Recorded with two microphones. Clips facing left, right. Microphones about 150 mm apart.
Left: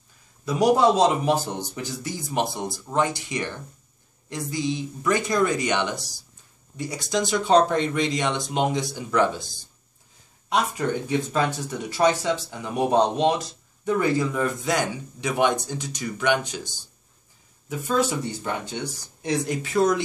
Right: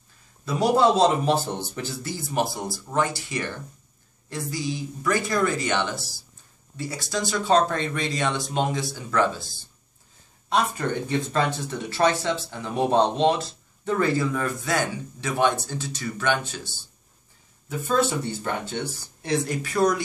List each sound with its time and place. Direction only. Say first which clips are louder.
0.5 s speech: left 1 dB; 15° left (ahead or behind)
11.9 s speech: left 1 dB; 15° left (ahead or behind)